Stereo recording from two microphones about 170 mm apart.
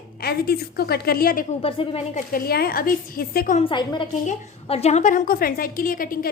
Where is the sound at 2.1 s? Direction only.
60° left (ahead or behind).